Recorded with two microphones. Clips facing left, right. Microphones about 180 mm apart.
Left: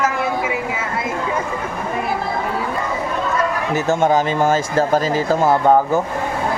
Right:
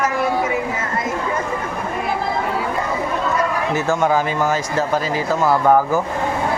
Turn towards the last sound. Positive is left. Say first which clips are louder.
# left 1 dB
turn(degrees=25)  # may be behind; listen again after turning